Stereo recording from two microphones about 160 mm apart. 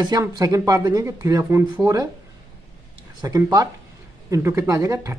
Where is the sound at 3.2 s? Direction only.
25° right (ahead or behind).